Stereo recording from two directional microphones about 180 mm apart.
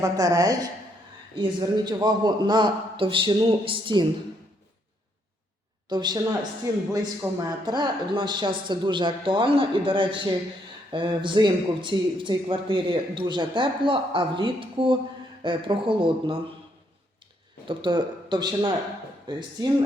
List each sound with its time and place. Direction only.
0.0 s a man's voice: 20° right (ahead or behind)
5.9 s a man's voice: 25° right (ahead or behind)
17.7 s a man's voice: 25° right (ahead or behind)